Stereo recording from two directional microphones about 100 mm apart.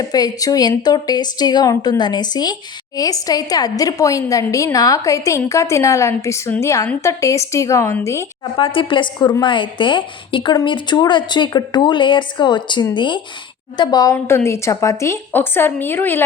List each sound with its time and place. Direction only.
0.1 s a woman's voice: 40° left (ahead or behind)
8.5 s a woman's voice: 60° left (ahead or behind); by 14.2 s 40° left (ahead or behind)
14.3 s a woman's voice: 25° left (ahead or behind)